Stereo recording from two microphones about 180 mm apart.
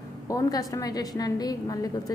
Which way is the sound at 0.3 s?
20° left (ahead or behind).